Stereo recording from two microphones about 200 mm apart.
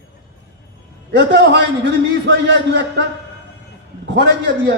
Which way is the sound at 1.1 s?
55° right (ahead or behind).